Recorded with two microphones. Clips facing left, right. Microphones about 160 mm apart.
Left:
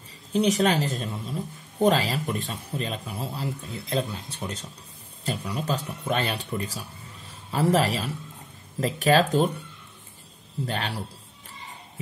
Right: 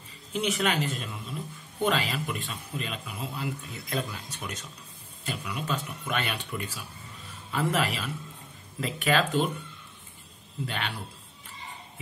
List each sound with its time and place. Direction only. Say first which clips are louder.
0.3 s speech: left 6 dB; 35° left (ahead or behind)
10.6 s speech: left 4 dB; 35° left (ahead or behind)